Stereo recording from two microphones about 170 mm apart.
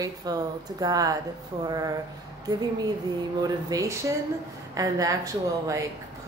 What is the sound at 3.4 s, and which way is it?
Speech, 20° right (ahead or behind).